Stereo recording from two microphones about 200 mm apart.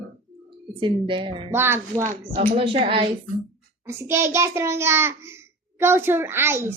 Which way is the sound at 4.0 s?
15° right (ahead or behind).